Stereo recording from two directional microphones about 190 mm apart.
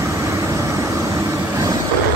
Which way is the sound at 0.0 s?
15° right (ahead or behind).